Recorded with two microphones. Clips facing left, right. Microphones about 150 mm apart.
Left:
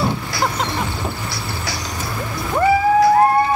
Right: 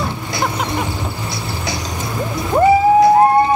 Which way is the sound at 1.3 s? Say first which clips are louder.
Right 3 dB; 20° right (ahead or behind).